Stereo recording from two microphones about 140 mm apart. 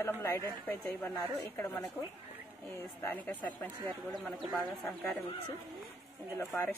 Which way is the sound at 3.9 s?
Centre (ahead or behind).